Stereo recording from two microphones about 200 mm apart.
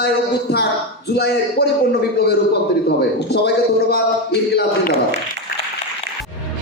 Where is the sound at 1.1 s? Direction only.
55° left (ahead or behind).